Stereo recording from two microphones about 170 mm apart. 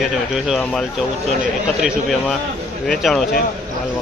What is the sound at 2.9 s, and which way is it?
Speech, centre (ahead or behind).